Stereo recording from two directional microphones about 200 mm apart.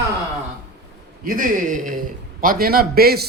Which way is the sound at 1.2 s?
45° right (ahead or behind).